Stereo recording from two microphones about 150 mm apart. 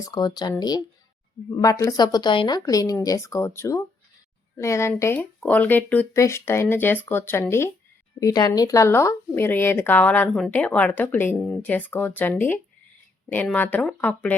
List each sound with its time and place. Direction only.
0.0 s a woman's voice: 25° left (ahead or behind); by 14.3 s 10° left (ahead or behind)